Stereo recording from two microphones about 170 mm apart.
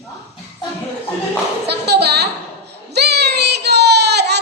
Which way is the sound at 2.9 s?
75° right (ahead or behind).